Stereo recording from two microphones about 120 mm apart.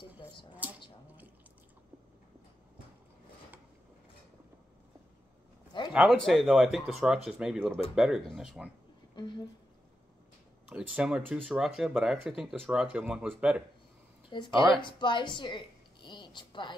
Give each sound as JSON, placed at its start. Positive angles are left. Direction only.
{"t": 0.6, "sound": "a sound", "side_deg": -15}
{"t": 5.9, "sound": "speech", "side_deg": 0}
{"t": 10.7, "sound": "speech", "side_deg": -10}
{"t": 14.3, "sound": "a woman's voice", "side_deg": 40}